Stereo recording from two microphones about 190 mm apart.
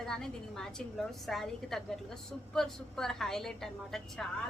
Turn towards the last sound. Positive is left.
turn(degrees=0)  # may be behind; listen again after turning